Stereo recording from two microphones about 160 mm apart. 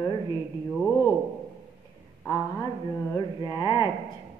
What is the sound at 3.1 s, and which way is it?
Speech, 25° left (ahead or behind).